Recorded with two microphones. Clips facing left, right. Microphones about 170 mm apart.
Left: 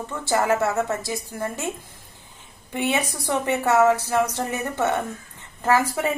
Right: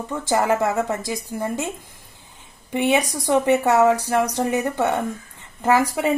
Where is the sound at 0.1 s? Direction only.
15° right (ahead or behind).